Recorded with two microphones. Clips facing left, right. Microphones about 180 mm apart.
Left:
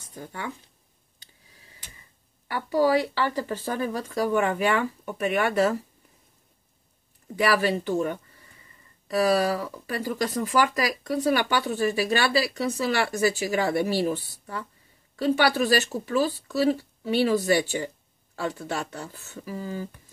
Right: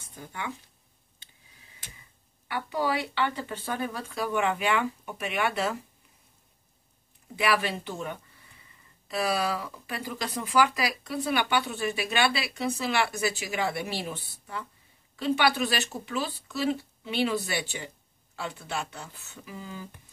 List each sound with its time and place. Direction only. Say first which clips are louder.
0.1 s speech: left 2 dB; 40° left (ahead or behind)
2.4 s speech: left 7 dB; 40° left (ahead or behind)
7.3 s speech: left 4 dB; 40° left (ahead or behind)